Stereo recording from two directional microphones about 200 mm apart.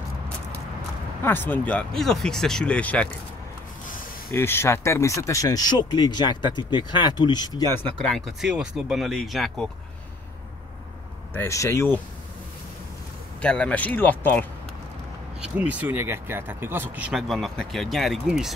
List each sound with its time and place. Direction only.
1.2 s speech: 10° left (ahead or behind)
4.3 s speech: 10° left (ahead or behind)
8.0 s speech: centre (ahead or behind)
11.3 s speech: 15° left (ahead or behind)
13.4 s speech: 5° left (ahead or behind)
15.4 s speech: 5° right (ahead or behind)